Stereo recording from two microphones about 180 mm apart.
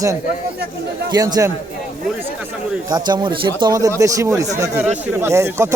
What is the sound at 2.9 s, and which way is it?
Speech, 25° right (ahead or behind).